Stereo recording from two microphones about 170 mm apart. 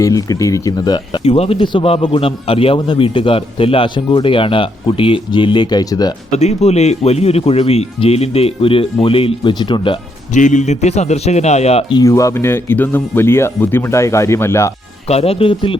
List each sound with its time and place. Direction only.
0.0 s speech: 20° left (ahead or behind)
6.3 s speech: 40° left (ahead or behind)
10.3 s speech: 45° left (ahead or behind)
11.9 s speech: 20° left (ahead or behind)
15.0 s speech: 35° left (ahead or behind)